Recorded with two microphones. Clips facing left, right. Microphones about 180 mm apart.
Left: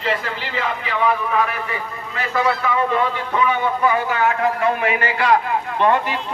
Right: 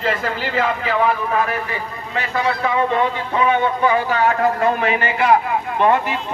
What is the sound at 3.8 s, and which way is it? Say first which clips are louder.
A man's voice: right 2 dB; 30° right (ahead or behind).